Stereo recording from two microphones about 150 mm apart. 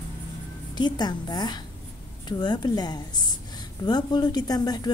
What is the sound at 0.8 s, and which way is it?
A woman's voice, 30° left (ahead or behind).